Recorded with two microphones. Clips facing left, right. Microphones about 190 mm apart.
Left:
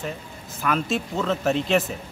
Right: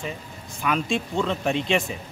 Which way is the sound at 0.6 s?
5° left (ahead or behind).